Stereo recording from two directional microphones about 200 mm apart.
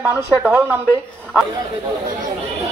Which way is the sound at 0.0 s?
10° right (ahead or behind).